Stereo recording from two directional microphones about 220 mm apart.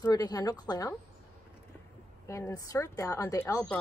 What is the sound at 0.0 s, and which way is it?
Speech, 15° left (ahead or behind).